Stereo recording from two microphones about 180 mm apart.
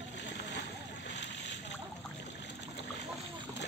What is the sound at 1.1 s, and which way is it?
Boat, 80° left.